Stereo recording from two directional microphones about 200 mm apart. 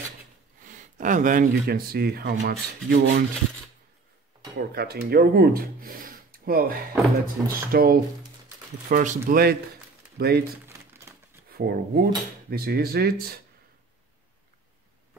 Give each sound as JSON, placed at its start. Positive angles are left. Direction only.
{"t": 0.7, "sound": "speech", "side_deg": -40}
{"t": 4.6, "sound": "speech", "side_deg": -50}
{"t": 11.1, "sound": "crumpling", "side_deg": -15}
{"t": 11.5, "sound": "speech", "side_deg": -50}